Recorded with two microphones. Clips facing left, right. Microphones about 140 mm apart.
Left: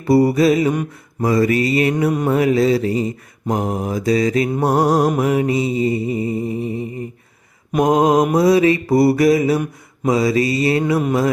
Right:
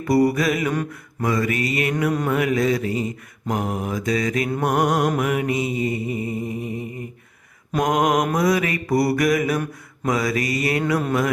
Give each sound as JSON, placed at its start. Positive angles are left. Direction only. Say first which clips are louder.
{"t": 0.0, "sound": "mantra", "louder": "left 5 dB", "side_deg": 30}